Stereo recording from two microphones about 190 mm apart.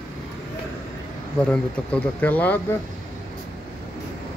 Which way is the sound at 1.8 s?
5° left (ahead or behind).